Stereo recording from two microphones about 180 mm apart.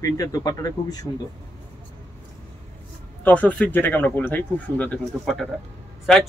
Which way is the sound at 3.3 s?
10° left (ahead or behind).